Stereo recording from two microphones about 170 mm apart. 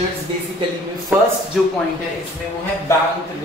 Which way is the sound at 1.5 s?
Centre (ahead or behind).